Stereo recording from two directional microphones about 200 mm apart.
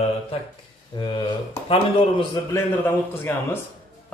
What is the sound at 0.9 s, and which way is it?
Speech, 20° left (ahead or behind).